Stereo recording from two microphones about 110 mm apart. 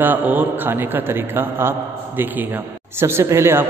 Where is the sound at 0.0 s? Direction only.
15° right (ahead or behind).